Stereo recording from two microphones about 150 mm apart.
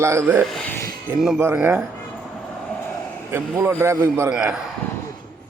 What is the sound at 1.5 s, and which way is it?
Speech, 10° right (ahead or behind).